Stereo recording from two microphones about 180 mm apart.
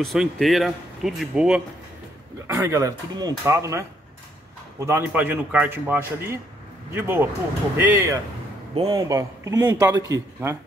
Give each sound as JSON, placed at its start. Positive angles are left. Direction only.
{"t": 0.0, "sound": "speech", "side_deg": 0}
{"t": 8.7, "sound": "speech", "side_deg": -30}
{"t": 9.0, "sound": "speech", "side_deg": -20}